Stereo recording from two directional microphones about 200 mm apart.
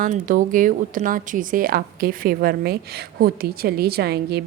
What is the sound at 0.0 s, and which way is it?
A woman's voice, 40° right (ahead or behind).